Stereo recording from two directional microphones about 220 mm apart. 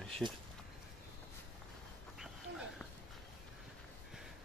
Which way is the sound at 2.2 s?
Centre (ahead or behind).